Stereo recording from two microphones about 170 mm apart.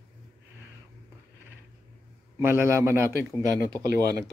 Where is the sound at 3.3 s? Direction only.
5° left (ahead or behind).